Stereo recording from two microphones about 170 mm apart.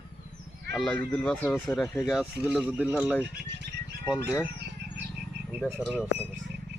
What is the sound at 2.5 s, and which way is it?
Speech, 5° right (ahead or behind).